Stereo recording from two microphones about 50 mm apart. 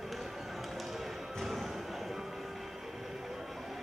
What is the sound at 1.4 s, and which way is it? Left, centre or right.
Music, centre.